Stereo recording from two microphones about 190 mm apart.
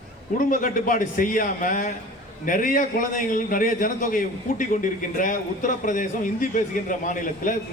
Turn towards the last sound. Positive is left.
turn(degrees=45)  # may be behind; listen again after turning